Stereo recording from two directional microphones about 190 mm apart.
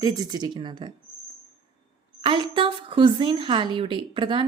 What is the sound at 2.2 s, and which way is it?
A woman's voice, 25° right (ahead or behind).